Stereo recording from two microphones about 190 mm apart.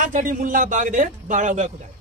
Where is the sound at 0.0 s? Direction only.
45° right (ahead or behind).